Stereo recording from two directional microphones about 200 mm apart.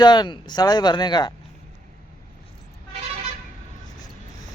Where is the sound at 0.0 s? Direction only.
20° left (ahead or behind).